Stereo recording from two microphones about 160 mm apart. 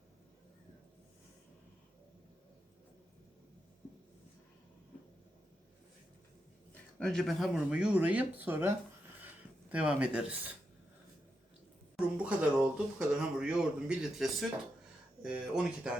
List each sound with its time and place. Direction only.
7.0 s speech: 5° left (ahead or behind)
11.9 s speech: 5° right (ahead or behind)